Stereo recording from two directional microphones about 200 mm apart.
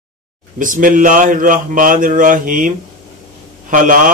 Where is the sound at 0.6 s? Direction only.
40° right (ahead or behind).